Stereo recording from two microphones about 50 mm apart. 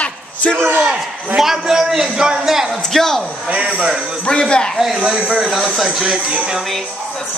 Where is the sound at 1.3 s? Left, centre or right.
Centre.